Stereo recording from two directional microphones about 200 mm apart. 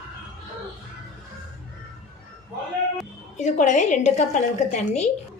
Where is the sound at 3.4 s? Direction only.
35° left (ahead or behind).